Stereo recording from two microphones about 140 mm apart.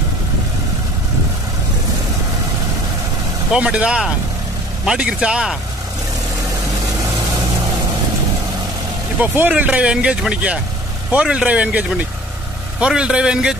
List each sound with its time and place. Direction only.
3.5 s speech: 5° right (ahead or behind)
9.2 s speech: 10° right (ahead or behind)
12.8 s speech: 5° right (ahead or behind)